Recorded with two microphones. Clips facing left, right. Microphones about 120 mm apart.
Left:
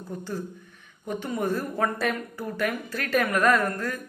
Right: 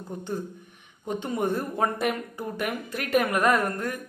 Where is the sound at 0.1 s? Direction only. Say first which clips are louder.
Right 1 dB; 20° right (ahead or behind).